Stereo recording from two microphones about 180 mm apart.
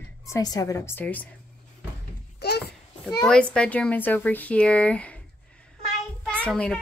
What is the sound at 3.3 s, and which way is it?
Speech, 5° left (ahead or behind).